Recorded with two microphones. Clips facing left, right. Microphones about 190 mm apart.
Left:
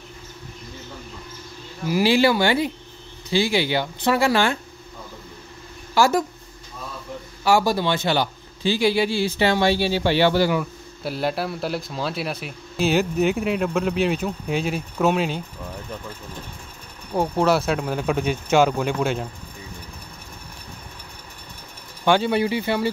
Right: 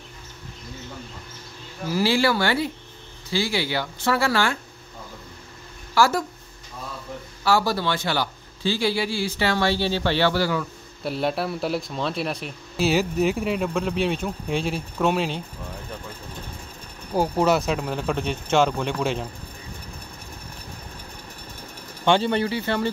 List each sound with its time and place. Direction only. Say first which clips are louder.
1.9 s a man's voice: left 3 dB; 15° left (ahead or behind)
5.9 s speech: left 2 dB; 15° left (ahead or behind)
7.4 s a man's voice: left 3 dB; 15° left (ahead or behind)
11.1 s speech: even; centre (ahead or behind)
17.1 s speech: left 1 dB; centre (ahead or behind)
22.0 s a man's voice: left 1 dB; 5° left (ahead or behind)